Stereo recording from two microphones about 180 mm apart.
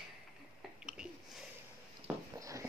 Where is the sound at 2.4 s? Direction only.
15° right (ahead or behind).